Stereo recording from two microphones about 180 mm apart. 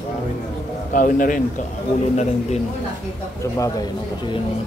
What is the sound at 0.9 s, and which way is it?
Speech, 50° left (ahead or behind).